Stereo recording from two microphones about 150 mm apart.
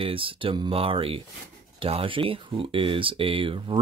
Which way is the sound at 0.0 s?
35° right (ahead or behind).